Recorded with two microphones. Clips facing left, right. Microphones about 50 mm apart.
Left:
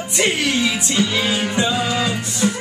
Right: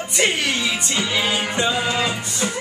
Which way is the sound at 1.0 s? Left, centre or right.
Right.